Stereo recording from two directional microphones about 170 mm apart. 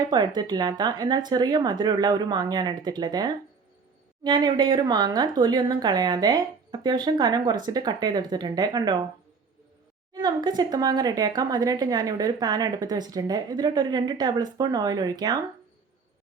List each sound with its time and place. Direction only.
0.1 s speech: 25° right (ahead or behind)
10.2 s speech: 25° right (ahead or behind)